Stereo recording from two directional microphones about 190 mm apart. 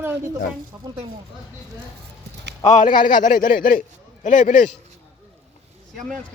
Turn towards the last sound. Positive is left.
turn(degrees=5)  # may be behind; listen again after turning